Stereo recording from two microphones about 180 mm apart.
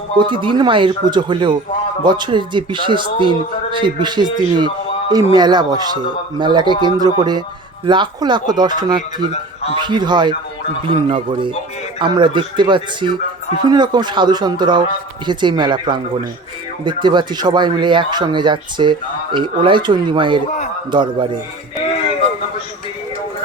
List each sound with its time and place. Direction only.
0.2 s speech: 25° right (ahead or behind)